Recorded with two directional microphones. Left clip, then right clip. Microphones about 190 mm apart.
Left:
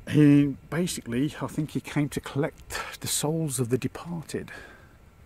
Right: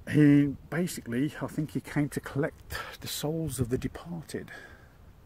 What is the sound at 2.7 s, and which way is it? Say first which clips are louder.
Speech: left 5 dB; 40° left (ahead or behind).